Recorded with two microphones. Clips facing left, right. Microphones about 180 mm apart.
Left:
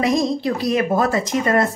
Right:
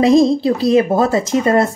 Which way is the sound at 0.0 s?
30° right (ahead or behind).